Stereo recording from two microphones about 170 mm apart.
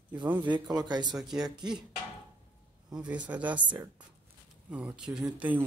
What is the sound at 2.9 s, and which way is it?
Speech, 5° right (ahead or behind).